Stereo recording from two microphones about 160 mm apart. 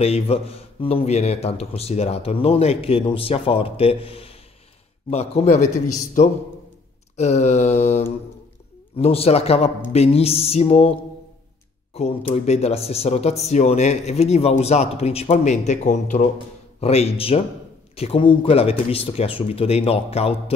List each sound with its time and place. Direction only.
0.0 s a man's voice: 40° left (ahead or behind)
7.2 s mantra: 45° left (ahead or behind)
8.9 s a man's voice: 40° left (ahead or behind)